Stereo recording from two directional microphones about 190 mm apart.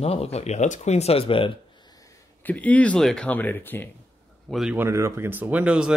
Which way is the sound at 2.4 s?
10° left (ahead or behind).